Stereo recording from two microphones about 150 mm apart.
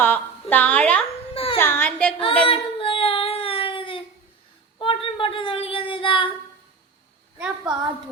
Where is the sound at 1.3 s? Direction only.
40° left (ahead or behind).